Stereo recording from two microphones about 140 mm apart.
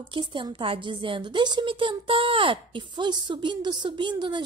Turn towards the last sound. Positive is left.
turn(degrees=-35)  # may be behind; listen again after turning